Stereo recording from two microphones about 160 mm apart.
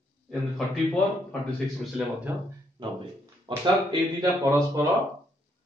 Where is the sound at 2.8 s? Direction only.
30° right (ahead or behind).